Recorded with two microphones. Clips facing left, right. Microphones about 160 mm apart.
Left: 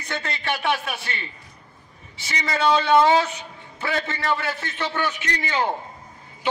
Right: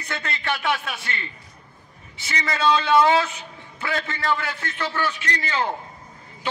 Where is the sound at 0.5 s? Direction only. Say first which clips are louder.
Left 1 dB; 30° left (ahead or behind).